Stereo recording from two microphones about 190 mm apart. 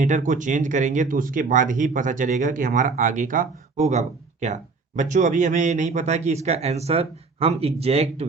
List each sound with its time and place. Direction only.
0.0 s speech: 40° right (ahead or behind)